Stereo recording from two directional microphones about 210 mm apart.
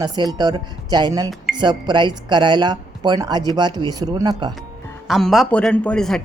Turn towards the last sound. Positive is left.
turn(degrees=5)  # may be behind; listen again after turning